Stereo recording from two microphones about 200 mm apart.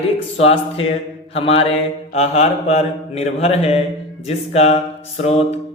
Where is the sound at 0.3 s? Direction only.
30° left (ahead or behind).